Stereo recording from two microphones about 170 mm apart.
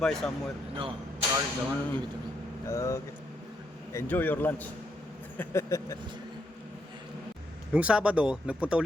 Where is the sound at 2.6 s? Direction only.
15° left (ahead or behind).